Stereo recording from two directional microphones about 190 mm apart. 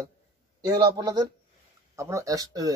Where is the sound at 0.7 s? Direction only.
20° right (ahead or behind).